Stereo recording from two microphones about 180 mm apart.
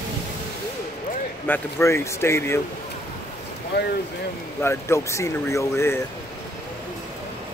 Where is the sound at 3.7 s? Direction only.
70° left (ahead or behind).